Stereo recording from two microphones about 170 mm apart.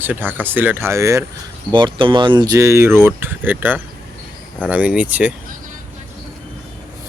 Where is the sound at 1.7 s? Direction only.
30° right (ahead or behind); by 5.3 s 10° right (ahead or behind).